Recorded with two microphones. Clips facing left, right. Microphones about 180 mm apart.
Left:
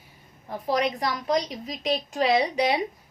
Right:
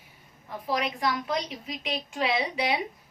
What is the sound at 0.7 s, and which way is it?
A woman's voice, 40° left (ahead or behind).